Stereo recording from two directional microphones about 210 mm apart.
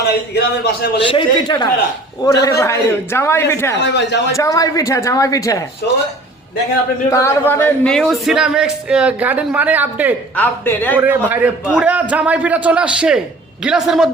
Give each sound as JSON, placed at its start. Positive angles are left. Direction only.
{"t": 0.0, "sound": "a man's voice", "side_deg": 50}
{"t": 1.0, "sound": "a man's voice", "side_deg": 20}
{"t": 3.8, "sound": "speech", "side_deg": 55}
{"t": 4.4, "sound": "speech", "side_deg": 15}
{"t": 7.1, "sound": "speech", "side_deg": 15}
{"t": 10.3, "sound": "speech", "side_deg": 10}
{"t": 10.9, "sound": "a man's voice", "side_deg": -10}